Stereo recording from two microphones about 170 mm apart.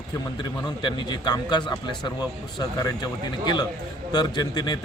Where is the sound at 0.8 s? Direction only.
25° left (ahead or behind).